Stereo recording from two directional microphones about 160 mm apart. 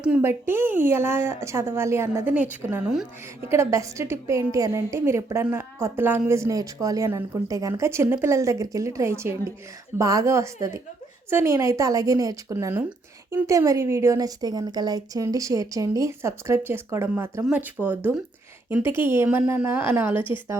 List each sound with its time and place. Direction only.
0.0 s a woman's voice: 10° right (ahead or behind)
3.5 s a woman's voice: 20° right (ahead or behind)